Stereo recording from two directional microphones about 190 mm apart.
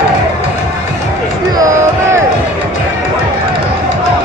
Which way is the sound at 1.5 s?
15° right (ahead or behind).